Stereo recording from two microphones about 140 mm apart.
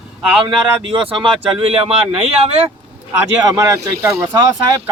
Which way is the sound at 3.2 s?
20° right (ahead or behind).